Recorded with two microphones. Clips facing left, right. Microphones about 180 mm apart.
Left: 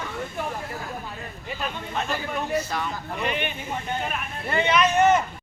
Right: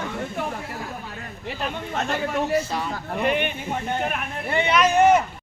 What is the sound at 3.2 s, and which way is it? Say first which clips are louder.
Speech: right 6 dB; 55° right (ahead or behind).